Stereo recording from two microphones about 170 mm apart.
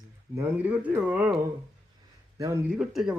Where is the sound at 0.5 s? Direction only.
10° right (ahead or behind).